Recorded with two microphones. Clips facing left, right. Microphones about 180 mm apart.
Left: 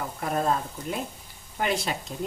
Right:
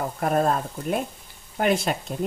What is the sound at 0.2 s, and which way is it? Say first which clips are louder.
A woman's voice: right 4 dB; 55° right (ahead or behind).